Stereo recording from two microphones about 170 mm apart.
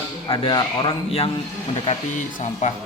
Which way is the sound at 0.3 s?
30° left (ahead or behind).